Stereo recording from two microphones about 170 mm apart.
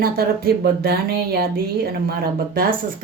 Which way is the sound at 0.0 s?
65° right (ahead or behind).